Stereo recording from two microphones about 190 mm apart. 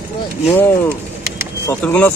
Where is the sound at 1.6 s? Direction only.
10° left (ahead or behind).